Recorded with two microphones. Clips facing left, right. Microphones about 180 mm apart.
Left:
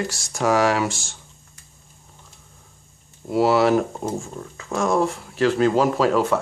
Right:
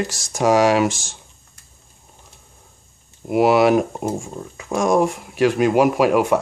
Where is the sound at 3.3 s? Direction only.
15° right (ahead or behind).